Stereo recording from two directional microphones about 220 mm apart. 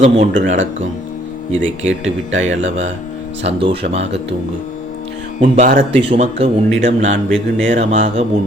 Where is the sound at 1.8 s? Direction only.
60° right (ahead or behind).